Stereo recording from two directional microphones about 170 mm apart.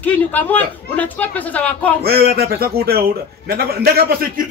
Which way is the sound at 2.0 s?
65° right (ahead or behind).